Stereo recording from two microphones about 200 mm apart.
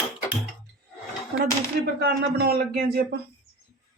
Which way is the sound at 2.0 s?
55° right (ahead or behind).